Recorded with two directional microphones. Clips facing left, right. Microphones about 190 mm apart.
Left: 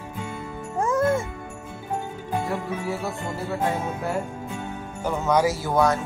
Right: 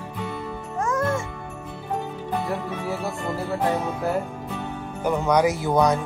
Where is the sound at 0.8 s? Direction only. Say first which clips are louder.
Left 3 dB; 30° left (ahead or behind).